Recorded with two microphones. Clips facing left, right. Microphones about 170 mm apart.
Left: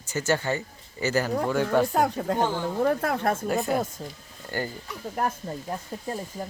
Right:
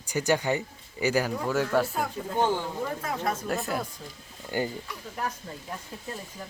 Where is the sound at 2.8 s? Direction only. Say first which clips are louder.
Left 7 dB; 65° left (ahead or behind).